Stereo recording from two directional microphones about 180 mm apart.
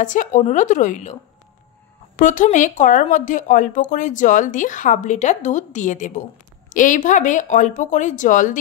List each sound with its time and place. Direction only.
0.0 s speech: 45° left (ahead or behind)
2.1 s speech: 45° left (ahead or behind)